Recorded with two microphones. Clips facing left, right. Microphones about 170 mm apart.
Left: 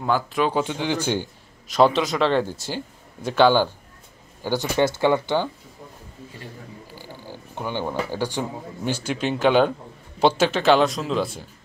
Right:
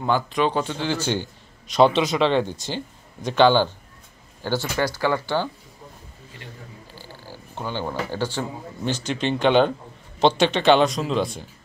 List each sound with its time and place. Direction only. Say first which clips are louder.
0.0 s speech: even; 5° left (ahead or behind)
1.7 s speech: right 1 dB; centre (ahead or behind); by 5.5 s 20° left (ahead or behind)
7.0 s a sound: left 2 dB; 15° left (ahead or behind)
8.1 s speech: left 1 dB; 15° left (ahead or behind)